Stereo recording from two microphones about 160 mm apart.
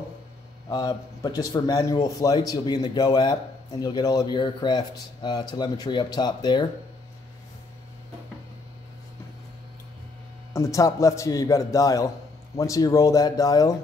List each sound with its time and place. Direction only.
0.7 s a man's voice: 25° left (ahead or behind)
10.5 s a man's voice: 20° left (ahead or behind)